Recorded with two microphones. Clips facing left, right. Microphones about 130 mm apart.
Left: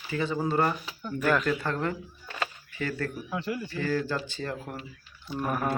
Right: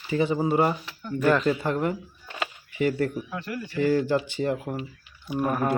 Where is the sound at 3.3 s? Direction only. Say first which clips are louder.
Left 1 dB; 20° left (ahead or behind).